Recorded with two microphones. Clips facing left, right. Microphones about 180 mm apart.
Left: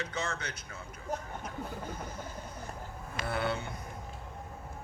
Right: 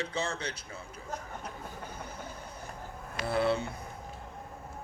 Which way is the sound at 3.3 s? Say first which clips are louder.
Right 5 dB; 30° right (ahead or behind).